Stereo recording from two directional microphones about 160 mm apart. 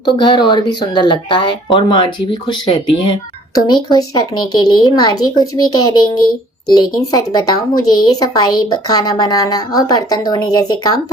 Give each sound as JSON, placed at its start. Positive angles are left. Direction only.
{"t": 0.2, "sound": "speech", "side_deg": 30}